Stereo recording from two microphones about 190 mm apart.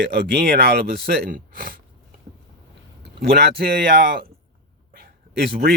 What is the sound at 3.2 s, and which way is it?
Speech, 60° right (ahead or behind).